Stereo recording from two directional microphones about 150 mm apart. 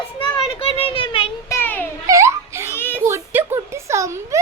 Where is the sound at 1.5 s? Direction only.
15° left (ahead or behind).